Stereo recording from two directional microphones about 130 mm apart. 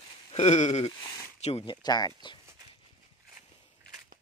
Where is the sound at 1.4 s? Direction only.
55° left (ahead or behind).